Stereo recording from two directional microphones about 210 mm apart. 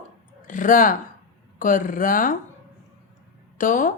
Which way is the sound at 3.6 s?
40° left (ahead or behind).